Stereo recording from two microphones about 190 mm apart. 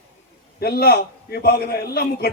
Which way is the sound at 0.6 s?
55° left (ahead or behind).